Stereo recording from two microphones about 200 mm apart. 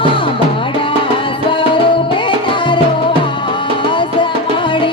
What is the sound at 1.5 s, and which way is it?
Music, 25° left (ahead or behind).